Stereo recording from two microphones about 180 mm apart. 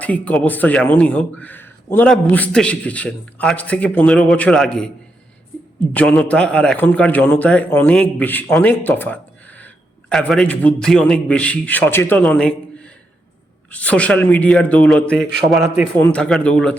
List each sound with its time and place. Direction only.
0.0 s speech: 10° left (ahead or behind)
5.9 s speech: 5° left (ahead or behind)